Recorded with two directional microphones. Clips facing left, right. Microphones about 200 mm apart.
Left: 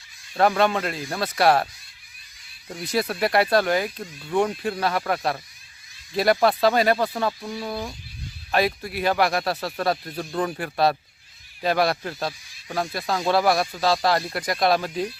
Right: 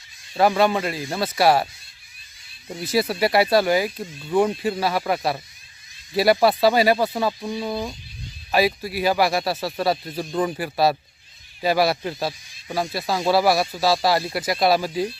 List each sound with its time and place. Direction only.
0.3 s speech: 5° right (ahead or behind)
2.8 s speech: 5° right (ahead or behind)
8.5 s speech: 5° right (ahead or behind)